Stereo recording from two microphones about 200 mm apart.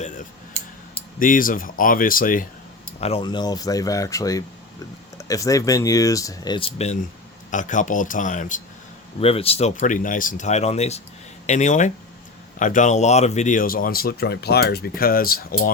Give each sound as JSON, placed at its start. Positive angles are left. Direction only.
{"t": 1.2, "sound": "speech", "side_deg": 45}
{"t": 3.0, "sound": "speech", "side_deg": 30}
{"t": 9.2, "sound": "speech", "side_deg": 30}